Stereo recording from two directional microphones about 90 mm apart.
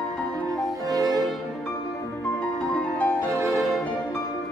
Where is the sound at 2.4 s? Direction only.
15° left (ahead or behind).